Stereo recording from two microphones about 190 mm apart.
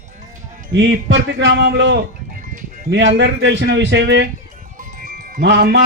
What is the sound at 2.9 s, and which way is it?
Speech, 70° right (ahead or behind).